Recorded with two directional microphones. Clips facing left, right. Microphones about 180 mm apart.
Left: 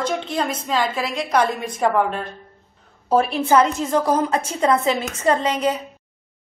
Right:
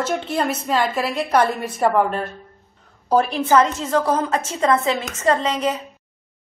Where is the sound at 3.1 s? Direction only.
10° left (ahead or behind).